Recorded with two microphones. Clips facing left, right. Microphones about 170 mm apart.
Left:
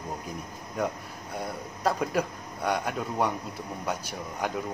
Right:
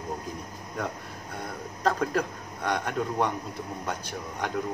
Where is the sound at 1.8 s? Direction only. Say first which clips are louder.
Right 1 dB; 10° left (ahead or behind).